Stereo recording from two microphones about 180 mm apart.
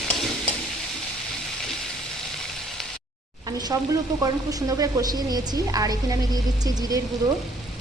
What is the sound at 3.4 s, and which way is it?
Sizzle, 20° right (ahead or behind).